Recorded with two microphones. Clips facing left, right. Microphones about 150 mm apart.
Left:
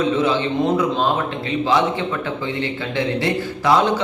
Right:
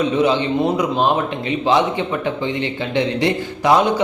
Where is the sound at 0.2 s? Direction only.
20° right (ahead or behind).